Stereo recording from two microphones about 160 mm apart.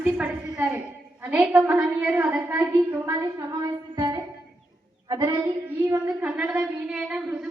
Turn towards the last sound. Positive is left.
turn(degrees=-10)  # may be behind; listen again after turning